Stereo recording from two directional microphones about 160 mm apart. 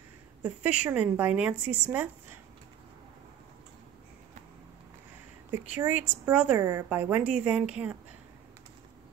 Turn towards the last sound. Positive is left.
turn(degrees=-5)  # may be behind; listen again after turning